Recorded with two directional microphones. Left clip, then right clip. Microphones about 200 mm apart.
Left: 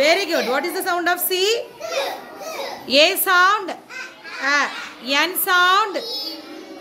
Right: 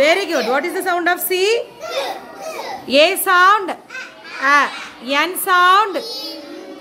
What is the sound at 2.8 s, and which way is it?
A woman's voice, 10° right (ahead or behind).